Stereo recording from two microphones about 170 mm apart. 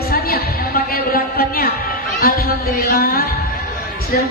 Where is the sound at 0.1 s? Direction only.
60° left (ahead or behind).